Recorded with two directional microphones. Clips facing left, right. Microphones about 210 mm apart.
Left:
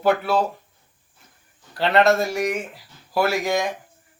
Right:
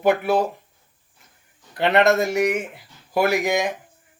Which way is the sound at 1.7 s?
20° right (ahead or behind).